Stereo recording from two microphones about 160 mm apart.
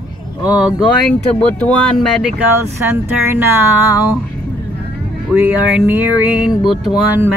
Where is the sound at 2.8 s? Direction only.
15° right (ahead or behind).